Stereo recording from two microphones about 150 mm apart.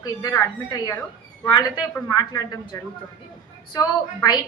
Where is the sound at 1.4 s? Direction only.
25° left (ahead or behind).